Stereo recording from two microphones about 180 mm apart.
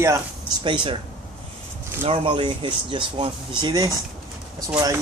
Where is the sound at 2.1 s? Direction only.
25° right (ahead or behind).